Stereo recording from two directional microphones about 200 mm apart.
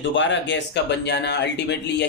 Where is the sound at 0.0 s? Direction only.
65° left (ahead or behind).